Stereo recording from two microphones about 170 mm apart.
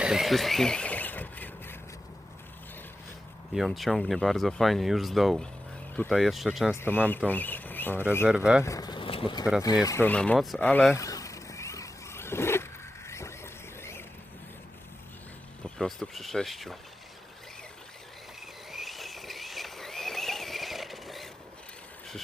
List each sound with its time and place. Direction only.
0.0 s squeal: 5° right (ahead or behind)
3.5 s speech: centre (ahead or behind)
6.7 s speech: 10° left (ahead or behind); by 9.5 s 30° left (ahead or behind)
9.8 s speech: 15° left (ahead or behind)
11.0 s vehicle: 20° left (ahead or behind)
13.1 s a sound: 15° left (ahead or behind)
15.6 s speech: 5° left (ahead or behind)
18.7 s horse: centre (ahead or behind)